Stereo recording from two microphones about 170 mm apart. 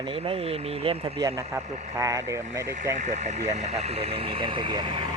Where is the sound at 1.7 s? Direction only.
40° right (ahead or behind).